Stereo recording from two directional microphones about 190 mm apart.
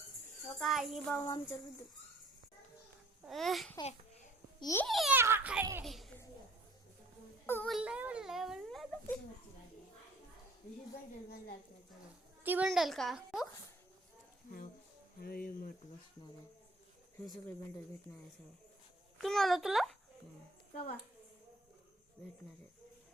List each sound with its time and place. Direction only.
0.6 s a child's voice: centre (ahead or behind)
1.2 s speech: 20° left (ahead or behind)
3.2 s a child's voice: centre (ahead or behind)
4.6 s speech: 15° left (ahead or behind)
4.9 s a child's voice: centre (ahead or behind)
5.1 s a sound: 10° right (ahead or behind)
7.4 s a sound: 10° left (ahead or behind)
7.7 s a sound: 5° right (ahead or behind)
12.4 s a child's voice: 10° right (ahead or behind)
15.2 s speech: 50° left (ahead or behind)
19.2 s a child's voice: centre (ahead or behind)